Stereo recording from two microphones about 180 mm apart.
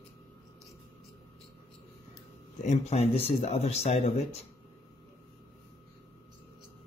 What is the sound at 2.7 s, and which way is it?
Speech, 35° left (ahead or behind).